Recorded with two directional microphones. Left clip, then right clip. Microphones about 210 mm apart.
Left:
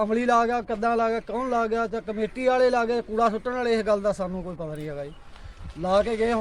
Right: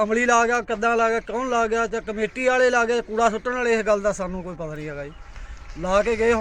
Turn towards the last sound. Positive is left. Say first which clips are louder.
# right 3 dB
turn(degrees=5)  # may be behind; listen again after turning